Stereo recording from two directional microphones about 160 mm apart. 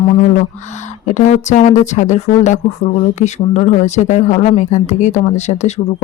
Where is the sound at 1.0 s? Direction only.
50° left (ahead or behind).